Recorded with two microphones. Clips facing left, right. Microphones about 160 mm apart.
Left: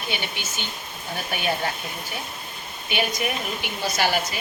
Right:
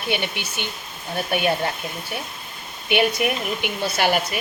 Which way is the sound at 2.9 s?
65° right (ahead or behind).